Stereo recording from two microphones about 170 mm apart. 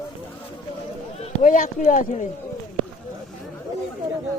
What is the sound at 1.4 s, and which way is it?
Speech, 50° left (ahead or behind).